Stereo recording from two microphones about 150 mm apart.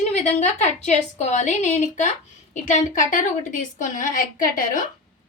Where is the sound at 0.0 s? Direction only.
45° left (ahead or behind); by 4.9 s 65° left (ahead or behind).